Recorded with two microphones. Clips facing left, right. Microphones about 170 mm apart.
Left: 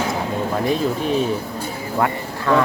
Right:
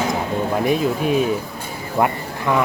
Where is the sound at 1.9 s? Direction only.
15° right (ahead or behind).